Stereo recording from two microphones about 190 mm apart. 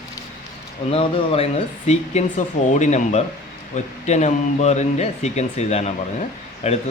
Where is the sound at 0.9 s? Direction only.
30° left (ahead or behind).